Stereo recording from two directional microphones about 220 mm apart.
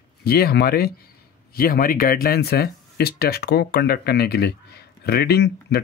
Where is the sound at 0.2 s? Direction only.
45° left (ahead or behind).